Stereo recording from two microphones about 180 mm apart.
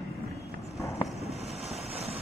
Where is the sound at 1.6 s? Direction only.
35° right (ahead or behind).